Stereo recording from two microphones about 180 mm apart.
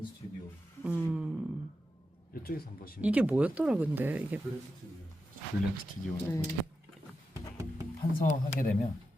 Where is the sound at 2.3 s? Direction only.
55° left (ahead or behind).